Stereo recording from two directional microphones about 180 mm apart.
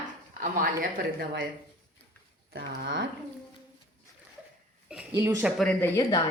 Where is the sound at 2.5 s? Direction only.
60° right (ahead or behind).